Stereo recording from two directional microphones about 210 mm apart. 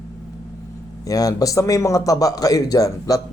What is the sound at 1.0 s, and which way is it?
A man's voice, 15° left (ahead or behind).